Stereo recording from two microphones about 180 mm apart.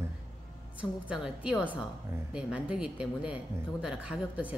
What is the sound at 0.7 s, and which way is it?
A woman's voice, 5° right (ahead or behind).